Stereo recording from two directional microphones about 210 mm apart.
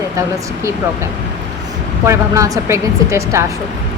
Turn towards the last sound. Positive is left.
turn(degrees=-15)  # may be behind; listen again after turning